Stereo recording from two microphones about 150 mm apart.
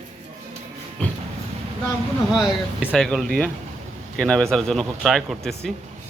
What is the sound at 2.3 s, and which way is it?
Speech, centre (ahead or behind).